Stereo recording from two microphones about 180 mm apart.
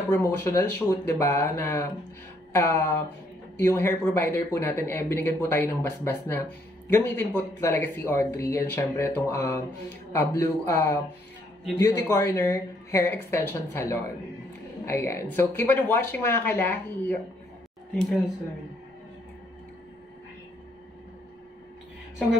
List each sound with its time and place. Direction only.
0.1 s speech: 15° left (ahead or behind)